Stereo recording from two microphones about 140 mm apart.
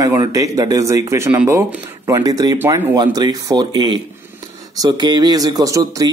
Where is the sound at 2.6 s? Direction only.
15° right (ahead or behind).